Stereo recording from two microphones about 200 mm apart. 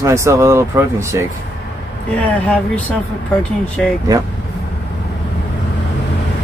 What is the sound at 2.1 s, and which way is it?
Speech, 5° left (ahead or behind).